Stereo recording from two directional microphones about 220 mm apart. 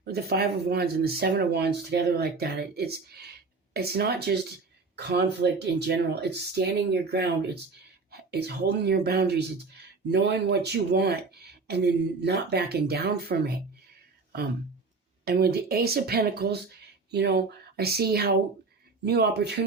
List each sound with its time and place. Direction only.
0.0 s speech: 45° right (ahead or behind)
15.2 s speech: 45° right (ahead or behind)